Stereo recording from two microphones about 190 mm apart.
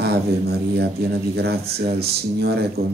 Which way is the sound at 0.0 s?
60° right (ahead or behind).